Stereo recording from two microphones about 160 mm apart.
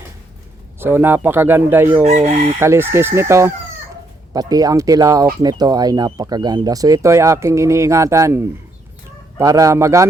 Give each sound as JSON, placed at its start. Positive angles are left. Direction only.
{"t": 0.8, "sound": "speech", "side_deg": -15}
{"t": 2.0, "sound": "chicken", "side_deg": -45}
{"t": 2.6, "sound": "speech", "side_deg": -15}